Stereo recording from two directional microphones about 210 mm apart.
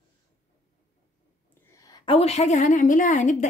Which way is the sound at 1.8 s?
20° left (ahead or behind).